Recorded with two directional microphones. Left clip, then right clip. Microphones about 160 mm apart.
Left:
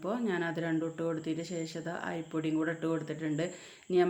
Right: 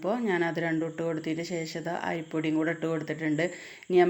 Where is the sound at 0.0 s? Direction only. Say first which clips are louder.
Right 6 dB; 20° right (ahead or behind).